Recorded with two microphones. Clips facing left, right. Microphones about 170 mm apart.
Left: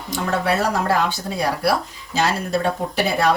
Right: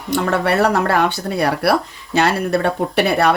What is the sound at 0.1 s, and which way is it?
Speech, 65° right (ahead or behind).